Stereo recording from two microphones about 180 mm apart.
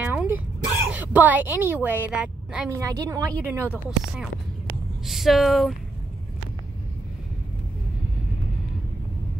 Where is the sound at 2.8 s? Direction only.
20° right (ahead or behind); by 5.8 s centre (ahead or behind).